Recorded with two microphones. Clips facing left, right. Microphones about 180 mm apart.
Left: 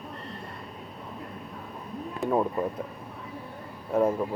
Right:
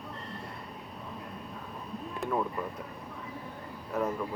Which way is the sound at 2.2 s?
Centre (ahead or behind).